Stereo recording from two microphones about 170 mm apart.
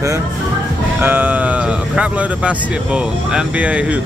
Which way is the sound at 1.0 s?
10° right (ahead or behind).